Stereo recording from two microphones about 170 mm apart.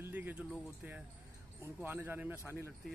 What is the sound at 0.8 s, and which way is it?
Speech, 10° right (ahead or behind).